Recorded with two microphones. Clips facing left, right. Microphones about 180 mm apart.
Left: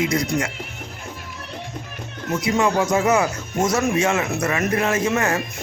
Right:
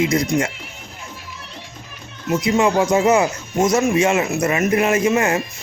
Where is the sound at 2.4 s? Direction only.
20° right (ahead or behind).